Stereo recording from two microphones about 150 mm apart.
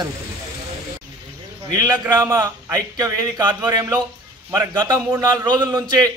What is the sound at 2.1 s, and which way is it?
A man's voice, 25° right (ahead or behind).